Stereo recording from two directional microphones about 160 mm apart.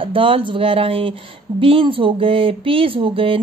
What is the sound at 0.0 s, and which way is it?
Speech, 35° right (ahead or behind).